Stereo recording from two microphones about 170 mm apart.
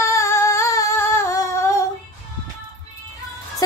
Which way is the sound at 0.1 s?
15° left (ahead or behind).